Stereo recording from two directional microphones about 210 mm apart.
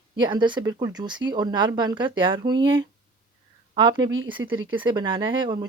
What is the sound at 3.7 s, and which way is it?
Speech, 20° right (ahead or behind).